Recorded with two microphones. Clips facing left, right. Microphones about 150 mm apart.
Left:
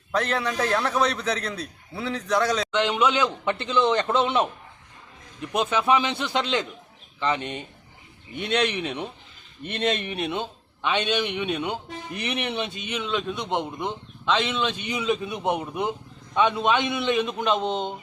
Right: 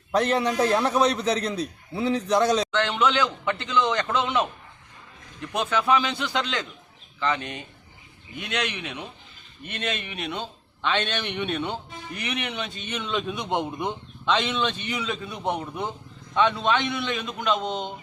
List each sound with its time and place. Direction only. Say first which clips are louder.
0.2 s a man's voice: right 3 dB; 15° right (ahead or behind)
2.7 s a man's voice: left 1 dB; 15° left (ahead or behind); by 10.3 s 35° left (ahead or behind)
10.3 s a man's voice: left 3 dB; 15° left (ahead or behind)
12.1 s a man's voice: left 3 dB; 30° left (ahead or behind)
12.8 s a man's voice: left 1 dB; 10° left (ahead or behind)
14.8 s a man's voice: left 4 dB; 20° left (ahead or behind)